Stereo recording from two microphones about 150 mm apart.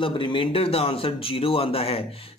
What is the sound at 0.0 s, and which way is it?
Speech, 35° left (ahead or behind).